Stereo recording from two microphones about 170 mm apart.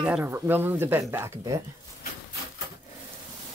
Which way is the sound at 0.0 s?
10° right (ahead or behind).